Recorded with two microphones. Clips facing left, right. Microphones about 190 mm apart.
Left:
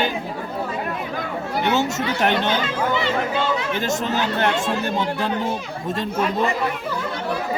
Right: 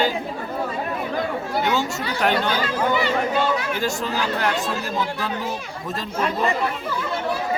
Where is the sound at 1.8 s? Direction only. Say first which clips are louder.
Left 3 dB; 20° left (ahead or behind).